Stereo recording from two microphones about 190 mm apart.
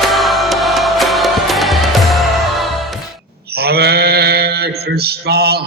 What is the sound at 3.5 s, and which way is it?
Mantra, 55° right (ahead or behind).